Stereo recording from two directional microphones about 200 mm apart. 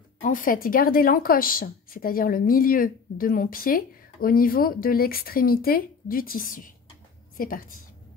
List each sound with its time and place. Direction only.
0.2 s a woman's voice: 40° left (ahead or behind)